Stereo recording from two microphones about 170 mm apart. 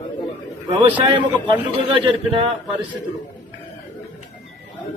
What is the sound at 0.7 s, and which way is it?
A man's voice, 30° right (ahead or behind).